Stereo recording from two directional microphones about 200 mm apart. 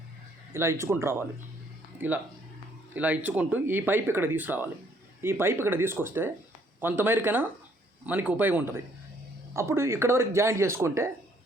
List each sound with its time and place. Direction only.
0.5 s speech: 15° right (ahead or behind)